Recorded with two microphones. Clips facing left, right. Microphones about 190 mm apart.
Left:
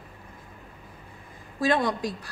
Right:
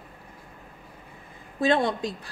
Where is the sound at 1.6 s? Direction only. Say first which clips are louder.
Right 1 dB; 25° right (ahead or behind).